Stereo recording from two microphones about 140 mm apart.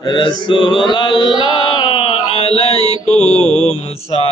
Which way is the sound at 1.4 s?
35° left (ahead or behind).